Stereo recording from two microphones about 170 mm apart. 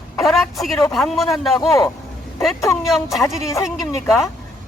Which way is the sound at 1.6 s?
20° left (ahead or behind).